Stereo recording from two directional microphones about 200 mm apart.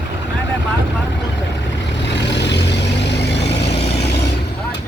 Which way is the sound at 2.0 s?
60° left (ahead or behind).